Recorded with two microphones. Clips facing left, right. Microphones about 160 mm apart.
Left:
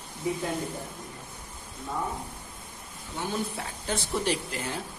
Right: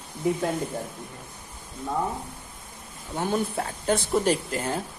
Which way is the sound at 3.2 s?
50° right (ahead or behind).